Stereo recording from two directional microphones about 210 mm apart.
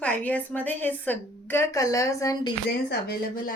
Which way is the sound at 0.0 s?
5° left (ahead or behind).